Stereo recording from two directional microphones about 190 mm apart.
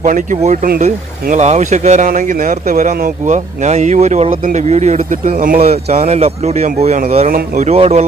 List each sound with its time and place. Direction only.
0.0 s speech: 40° right (ahead or behind)
5.6 s speech: 35° right (ahead or behind)